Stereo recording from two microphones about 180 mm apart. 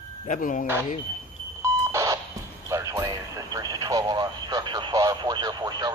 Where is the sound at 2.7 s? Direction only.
15° right (ahead or behind).